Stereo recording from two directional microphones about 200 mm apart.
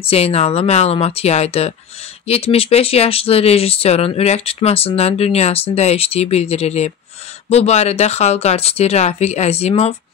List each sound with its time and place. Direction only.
0.0 s speech: 30° left (ahead or behind)